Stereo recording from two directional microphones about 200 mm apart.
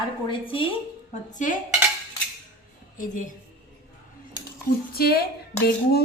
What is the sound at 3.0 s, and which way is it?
Speech, 40° left (ahead or behind).